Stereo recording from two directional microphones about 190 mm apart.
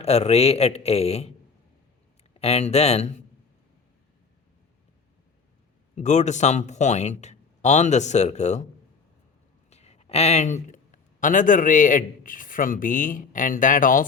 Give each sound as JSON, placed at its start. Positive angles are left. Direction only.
{"t": 0.0, "sound": "a man's voice", "side_deg": 35}
{"t": 2.4, "sound": "a man's voice", "side_deg": 35}
{"t": 6.0, "sound": "a man's voice", "side_deg": 40}
{"t": 9.6, "sound": "a man's voice", "side_deg": 35}